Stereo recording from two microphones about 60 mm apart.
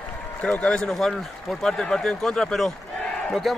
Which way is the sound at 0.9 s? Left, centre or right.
Centre.